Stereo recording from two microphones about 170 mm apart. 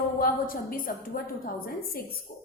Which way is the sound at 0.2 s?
55° left (ahead or behind).